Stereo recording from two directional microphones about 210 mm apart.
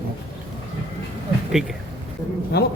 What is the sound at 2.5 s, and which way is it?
Speech, 50° left (ahead or behind).